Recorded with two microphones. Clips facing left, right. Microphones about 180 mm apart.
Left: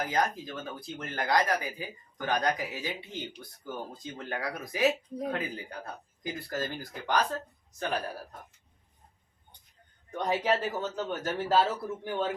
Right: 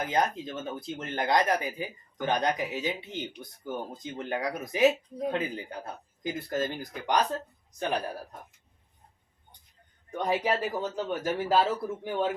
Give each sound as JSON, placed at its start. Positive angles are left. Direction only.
{"t": 0.0, "sound": "speech", "side_deg": -25}
{"t": 10.1, "sound": "a man's voice", "side_deg": -10}